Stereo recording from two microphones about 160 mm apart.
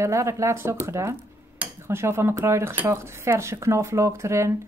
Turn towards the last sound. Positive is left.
turn(degrees=-20)  # may be behind; listen again after turning